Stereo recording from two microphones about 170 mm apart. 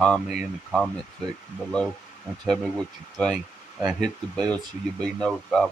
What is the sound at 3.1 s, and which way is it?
Speech, centre (ahead or behind).